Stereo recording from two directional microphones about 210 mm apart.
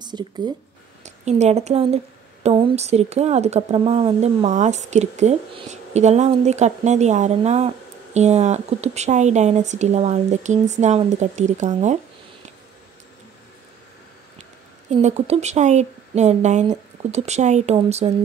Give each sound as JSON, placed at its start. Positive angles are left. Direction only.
{"t": 0.0, "sound": "speech", "side_deg": -20}
{"t": 1.0, "sound": "a woman's voice", "side_deg": -30}
{"t": 14.9, "sound": "speech", "side_deg": -30}